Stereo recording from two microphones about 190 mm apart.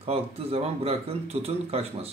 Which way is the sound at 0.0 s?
30° right (ahead or behind).